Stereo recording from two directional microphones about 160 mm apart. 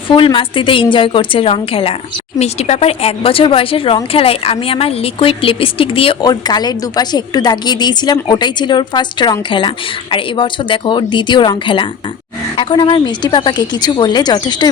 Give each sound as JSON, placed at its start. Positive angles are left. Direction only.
{"t": 0.1, "sound": "a woman's voice", "side_deg": 30}